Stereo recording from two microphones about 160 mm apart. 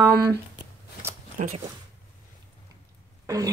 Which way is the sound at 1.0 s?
15° right (ahead or behind).